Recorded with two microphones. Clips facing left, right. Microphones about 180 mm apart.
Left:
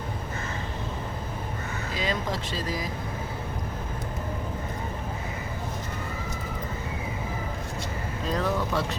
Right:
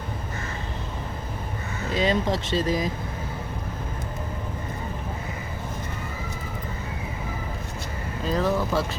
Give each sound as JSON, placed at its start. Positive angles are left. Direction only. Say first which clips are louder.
{"t": 2.0, "sound": "speech", "louder": "right 7 dB", "side_deg": -25}
{"t": 8.2, "sound": "speech", "louder": "right 4 dB", "side_deg": 0}